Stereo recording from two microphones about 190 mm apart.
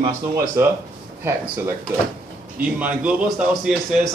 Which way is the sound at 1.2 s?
10° right (ahead or behind).